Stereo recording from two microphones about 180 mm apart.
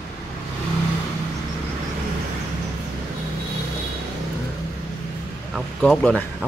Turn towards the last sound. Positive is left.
turn(degrees=5)  # may be behind; listen again after turning